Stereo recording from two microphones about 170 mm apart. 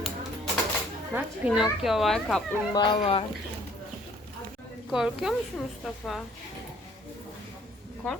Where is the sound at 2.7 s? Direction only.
25° left (ahead or behind).